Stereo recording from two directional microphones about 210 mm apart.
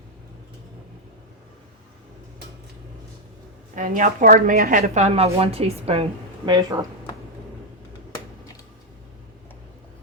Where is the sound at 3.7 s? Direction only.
40° right (ahead or behind); by 6.9 s 20° right (ahead or behind).